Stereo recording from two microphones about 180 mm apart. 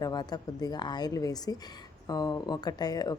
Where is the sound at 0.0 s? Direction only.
20° left (ahead or behind).